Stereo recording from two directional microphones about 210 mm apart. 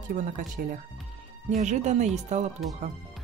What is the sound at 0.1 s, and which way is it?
Speech, 40° right (ahead or behind).